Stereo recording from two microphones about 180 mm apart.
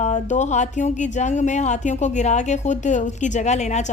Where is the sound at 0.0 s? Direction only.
40° left (ahead or behind).